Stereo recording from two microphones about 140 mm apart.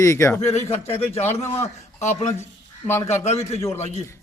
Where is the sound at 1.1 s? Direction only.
50° left (ahead or behind).